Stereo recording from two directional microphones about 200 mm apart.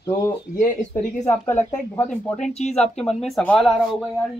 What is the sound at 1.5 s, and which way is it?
Speech, 10° left (ahead or behind).